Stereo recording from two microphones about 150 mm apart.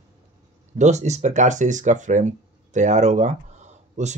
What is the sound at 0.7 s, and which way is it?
Speech, 50° right (ahead or behind).